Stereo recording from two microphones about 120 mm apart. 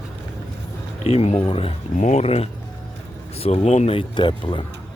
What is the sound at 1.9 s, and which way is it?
Speech, 90° left.